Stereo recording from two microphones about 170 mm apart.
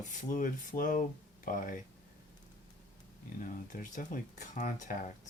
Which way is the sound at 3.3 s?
50° left (ahead or behind).